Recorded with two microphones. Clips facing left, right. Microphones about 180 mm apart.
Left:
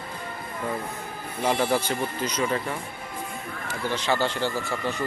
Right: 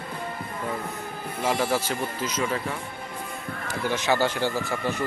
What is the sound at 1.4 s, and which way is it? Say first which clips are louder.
Speech: left 1 dB; centre (ahead or behind).